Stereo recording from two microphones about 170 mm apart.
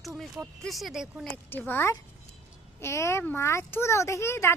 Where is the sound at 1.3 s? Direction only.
10° left (ahead or behind).